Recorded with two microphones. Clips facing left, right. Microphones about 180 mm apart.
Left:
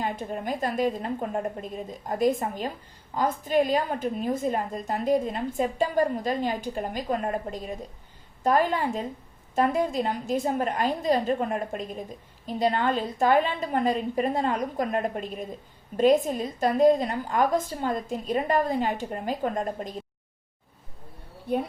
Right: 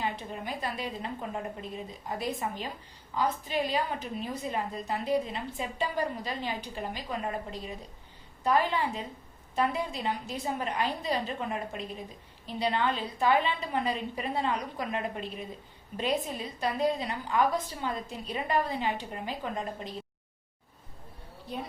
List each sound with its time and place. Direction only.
0.0 s a woman's voice: 45° left (ahead or behind)
21.4 s speech: 55° left (ahead or behind)